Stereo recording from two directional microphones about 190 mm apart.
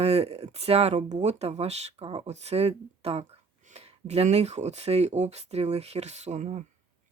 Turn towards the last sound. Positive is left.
turn(degrees=-35)  # may be behind; listen again after turning